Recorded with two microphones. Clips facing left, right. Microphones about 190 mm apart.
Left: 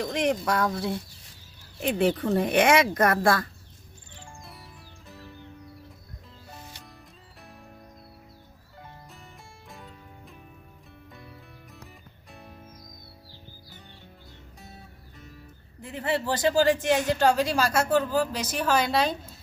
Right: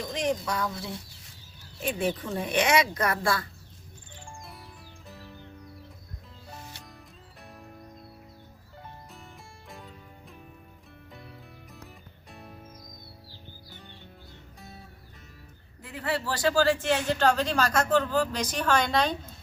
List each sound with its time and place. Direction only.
0.0 s speech: 65° left (ahead or behind)
4.4 s music: centre (ahead or behind)
9.6 s music: centre (ahead or behind)
15.8 s speech: 20° left (ahead or behind); by 19.1 s 5° left (ahead or behind)